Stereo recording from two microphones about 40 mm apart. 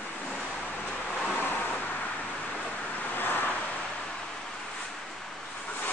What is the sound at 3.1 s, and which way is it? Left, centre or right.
Vehicle, left.